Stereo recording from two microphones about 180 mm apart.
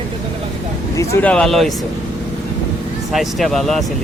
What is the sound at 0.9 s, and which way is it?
Speech, 15° left (ahead or behind).